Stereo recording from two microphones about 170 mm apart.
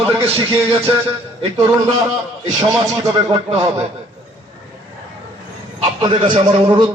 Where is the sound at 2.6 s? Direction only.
20° right (ahead or behind).